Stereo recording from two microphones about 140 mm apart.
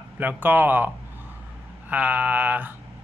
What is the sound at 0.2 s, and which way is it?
Speech, 15° right (ahead or behind).